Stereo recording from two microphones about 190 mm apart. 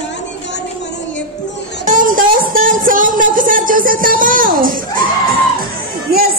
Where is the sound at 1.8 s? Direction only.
45° right (ahead or behind).